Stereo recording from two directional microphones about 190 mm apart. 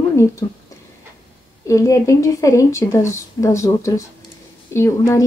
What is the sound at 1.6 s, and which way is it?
Speech, 15° left (ahead or behind).